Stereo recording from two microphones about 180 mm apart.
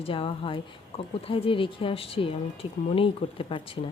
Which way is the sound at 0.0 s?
30° left (ahead or behind).